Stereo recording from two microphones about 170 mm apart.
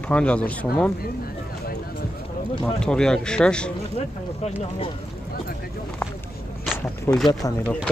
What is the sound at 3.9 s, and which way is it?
Speech, 40° left (ahead or behind).